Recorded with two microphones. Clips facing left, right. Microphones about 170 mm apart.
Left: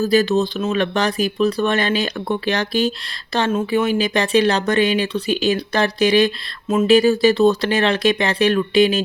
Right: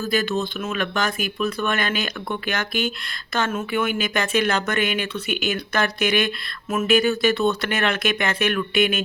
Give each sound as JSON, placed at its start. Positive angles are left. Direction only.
{"t": 0.0, "sound": "speech", "side_deg": 35}